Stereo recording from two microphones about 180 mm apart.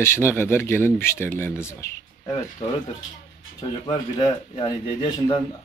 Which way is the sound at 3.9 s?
25° left (ahead or behind).